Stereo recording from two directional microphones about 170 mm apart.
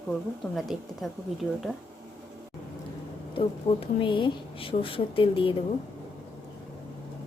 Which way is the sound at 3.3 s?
30° left (ahead or behind).